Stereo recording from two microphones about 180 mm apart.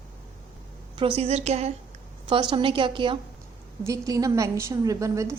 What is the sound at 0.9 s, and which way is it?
Speech, 30° right (ahead or behind).